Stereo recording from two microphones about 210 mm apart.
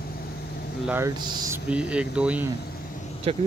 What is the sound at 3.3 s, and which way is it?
Speech, 30° right (ahead or behind).